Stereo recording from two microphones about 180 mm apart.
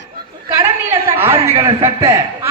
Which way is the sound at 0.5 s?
15° right (ahead or behind).